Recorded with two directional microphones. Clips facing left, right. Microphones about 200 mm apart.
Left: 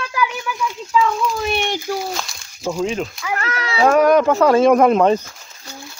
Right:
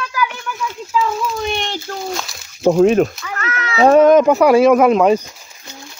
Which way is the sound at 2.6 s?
55° right (ahead or behind).